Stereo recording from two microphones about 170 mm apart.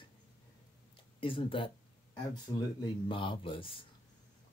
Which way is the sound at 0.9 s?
30° left (ahead or behind).